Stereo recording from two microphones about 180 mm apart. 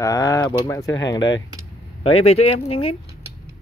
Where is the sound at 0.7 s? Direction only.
20° left (ahead or behind).